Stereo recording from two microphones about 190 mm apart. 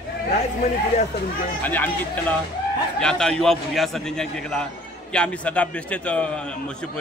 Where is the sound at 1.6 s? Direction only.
10° left (ahead or behind).